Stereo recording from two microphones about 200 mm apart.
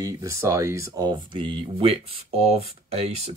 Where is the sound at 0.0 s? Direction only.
15° right (ahead or behind).